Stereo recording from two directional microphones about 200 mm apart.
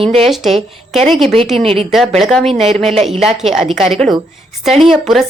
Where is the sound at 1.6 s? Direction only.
30° right (ahead or behind).